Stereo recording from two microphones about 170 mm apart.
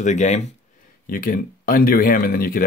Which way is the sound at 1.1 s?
60° left (ahead or behind).